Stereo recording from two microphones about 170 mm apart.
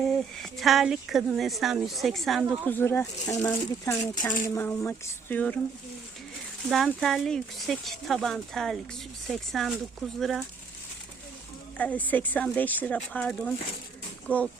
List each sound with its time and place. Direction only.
0.0 s speech: centre (ahead or behind)
2.6 s speech: 10° left (ahead or behind)
6.7 s speech: centre (ahead or behind)
11.8 s speech: 10° left (ahead or behind)